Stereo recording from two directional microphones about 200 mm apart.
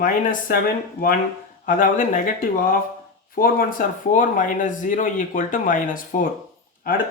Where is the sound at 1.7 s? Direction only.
40° left (ahead or behind).